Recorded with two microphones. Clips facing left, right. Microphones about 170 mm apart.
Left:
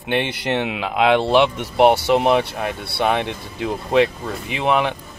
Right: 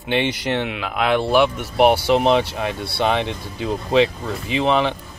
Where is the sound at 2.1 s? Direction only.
10° left (ahead or behind).